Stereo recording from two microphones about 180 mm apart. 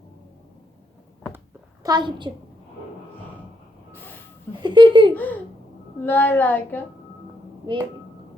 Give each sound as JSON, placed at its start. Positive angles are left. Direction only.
{"t": 1.8, "sound": "speech", "side_deg": -25}
{"t": 3.9, "sound": "vehicle", "side_deg": 10}
{"t": 4.6, "sound": "speech", "side_deg": -25}
{"t": 5.1, "sound": "speech", "side_deg": 10}